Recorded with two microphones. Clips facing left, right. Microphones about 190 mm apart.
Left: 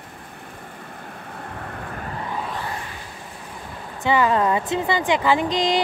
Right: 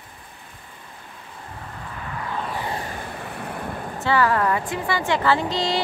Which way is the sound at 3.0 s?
60° right (ahead or behind).